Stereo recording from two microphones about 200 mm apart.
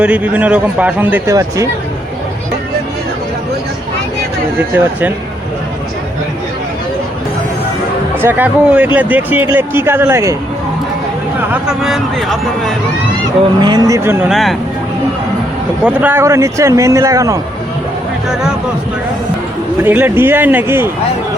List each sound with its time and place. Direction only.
0.0 s speech: 5° right (ahead or behind)
4.7 s speech: 10° right (ahead or behind)
8.1 s speech: 10° right (ahead or behind)
11.5 s speech: 5° right (ahead or behind)
13.6 s speech: 20° right (ahead or behind)
15.8 s speech: 5° right (ahead or behind)
19.8 s speech: 10° right (ahead or behind)